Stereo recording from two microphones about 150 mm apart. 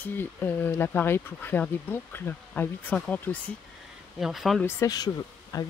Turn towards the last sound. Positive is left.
turn(degrees=25)  # may be behind; listen again after turning